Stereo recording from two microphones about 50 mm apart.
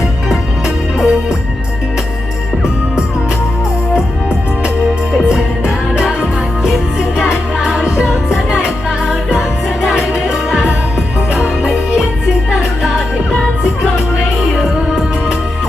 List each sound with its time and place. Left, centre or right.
0.9 s music: centre
5.3 s music: centre
7.2 s music: centre